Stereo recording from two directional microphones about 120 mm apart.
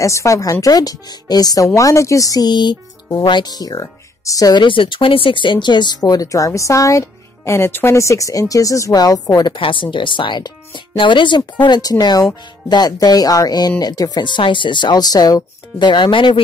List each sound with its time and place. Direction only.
0.0 s speech: 25° left (ahead or behind)
4.6 s speech: 45° left (ahead or behind)
9.6 s speech: 45° left (ahead or behind)